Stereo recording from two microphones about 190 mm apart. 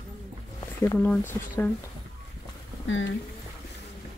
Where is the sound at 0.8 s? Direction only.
10° left (ahead or behind).